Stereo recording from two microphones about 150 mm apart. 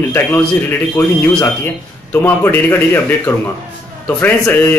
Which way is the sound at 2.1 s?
15° left (ahead or behind).